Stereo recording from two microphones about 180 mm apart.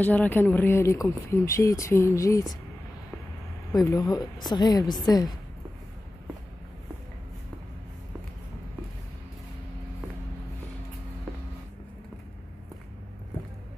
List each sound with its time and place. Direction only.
0.0 s speech: 10° left (ahead or behind)
3.7 s a woman's voice: 20° left (ahead or behind)